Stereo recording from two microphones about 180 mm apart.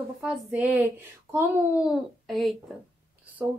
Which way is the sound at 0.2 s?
5° right (ahead or behind).